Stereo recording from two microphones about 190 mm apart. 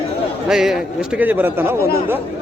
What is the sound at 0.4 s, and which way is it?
A man's voice, 5° right (ahead or behind).